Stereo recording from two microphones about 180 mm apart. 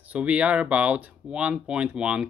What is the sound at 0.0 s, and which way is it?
Speech, 5° right (ahead or behind).